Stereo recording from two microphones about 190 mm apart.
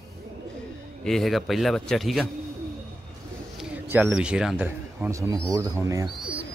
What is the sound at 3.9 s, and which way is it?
Speech, 10° right (ahead or behind).